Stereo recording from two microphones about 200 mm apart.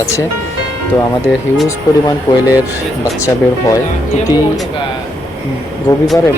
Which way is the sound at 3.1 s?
15° left (ahead or behind).